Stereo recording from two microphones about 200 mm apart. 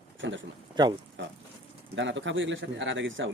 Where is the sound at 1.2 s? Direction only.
65° right (ahead or behind).